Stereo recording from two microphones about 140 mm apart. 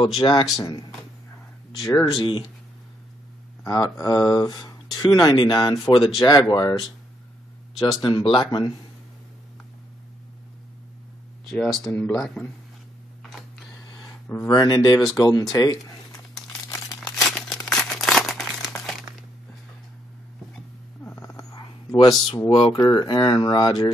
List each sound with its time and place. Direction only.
0.0 s speech: 35° left (ahead or behind)
2.1 s speech: 35° left (ahead or behind)
3.6 s speech: 25° left (ahead or behind)
8.0 s speech: 35° left (ahead or behind)
11.4 s speech: 5° left (ahead or behind)
13.2 s a sound: centre (ahead or behind)
14.5 s speech: 30° left (ahead or behind)
16.6 s crumpling: 25° left (ahead or behind)
17.3 s a sound: centre (ahead or behind)
17.6 s crumpling: 5° left (ahead or behind)
21.1 s dog: 20° left (ahead or behind)
21.9 s speech: 35° left (ahead or behind)